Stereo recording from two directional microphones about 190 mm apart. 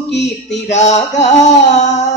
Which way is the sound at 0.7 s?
35° left (ahead or behind).